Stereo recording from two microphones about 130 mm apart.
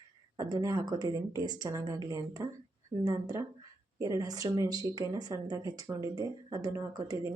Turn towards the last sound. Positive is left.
turn(degrees=-25)  # may be behind; listen again after turning